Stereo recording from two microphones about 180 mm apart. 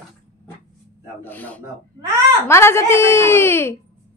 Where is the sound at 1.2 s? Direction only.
10° left (ahead or behind).